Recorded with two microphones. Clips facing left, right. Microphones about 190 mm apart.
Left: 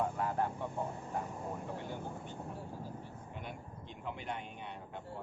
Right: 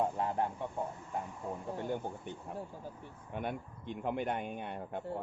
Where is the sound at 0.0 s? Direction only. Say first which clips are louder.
Right 2 dB; 25° right (ahead or behind).